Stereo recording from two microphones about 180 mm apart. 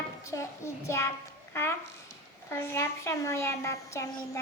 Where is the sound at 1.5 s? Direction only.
15° left (ahead or behind).